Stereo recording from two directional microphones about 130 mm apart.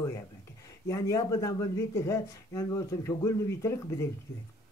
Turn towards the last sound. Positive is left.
turn(degrees=20)  # may be behind; listen again after turning